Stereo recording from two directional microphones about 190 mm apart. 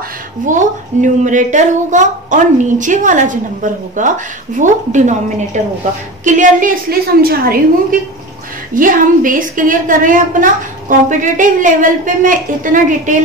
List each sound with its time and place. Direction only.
1.0 s a woman's voice: 40° right (ahead or behind)
6.2 s a woman's voice: 45° right (ahead or behind)